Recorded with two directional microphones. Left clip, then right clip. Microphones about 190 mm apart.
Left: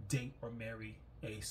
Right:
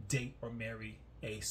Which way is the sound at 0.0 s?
10° right (ahead or behind).